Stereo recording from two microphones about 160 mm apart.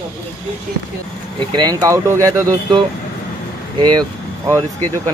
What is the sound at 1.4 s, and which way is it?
Speech, 25° right (ahead or behind).